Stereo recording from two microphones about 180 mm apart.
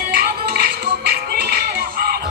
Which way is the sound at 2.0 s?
55° right (ahead or behind).